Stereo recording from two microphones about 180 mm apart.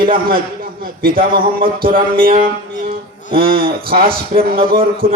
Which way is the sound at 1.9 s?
50° right (ahead or behind).